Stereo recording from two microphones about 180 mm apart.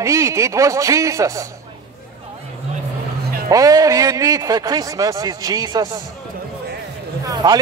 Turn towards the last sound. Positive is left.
turn(degrees=-20)  # may be behind; listen again after turning